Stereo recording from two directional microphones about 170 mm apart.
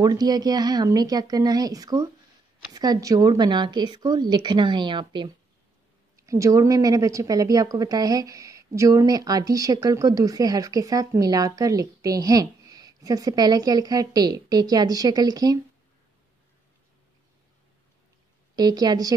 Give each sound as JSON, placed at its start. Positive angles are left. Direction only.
{"t": 0.0, "sound": "a woman's voice", "side_deg": -25}
{"t": 18.6, "sound": "a woman's voice", "side_deg": -25}